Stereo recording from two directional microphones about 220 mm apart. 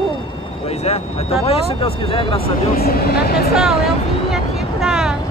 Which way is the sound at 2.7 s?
45° left (ahead or behind).